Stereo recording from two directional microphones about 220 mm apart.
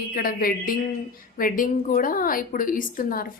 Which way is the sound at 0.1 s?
40° left (ahead or behind).